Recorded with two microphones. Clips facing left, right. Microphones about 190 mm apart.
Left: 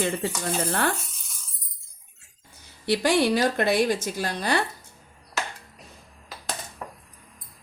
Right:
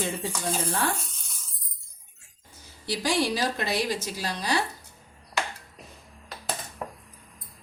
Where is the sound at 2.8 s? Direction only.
60° left (ahead or behind).